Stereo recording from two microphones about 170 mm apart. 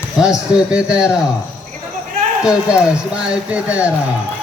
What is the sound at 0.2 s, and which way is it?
Speech, 5° right (ahead or behind).